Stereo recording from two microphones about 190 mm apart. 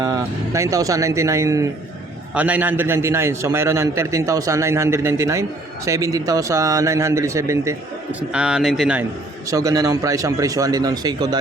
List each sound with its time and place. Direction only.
0.0 s a man's voice: 20° right (ahead or behind)
8.3 s speech: 5° right (ahead or behind)
9.5 s a man's voice: 15° right (ahead or behind)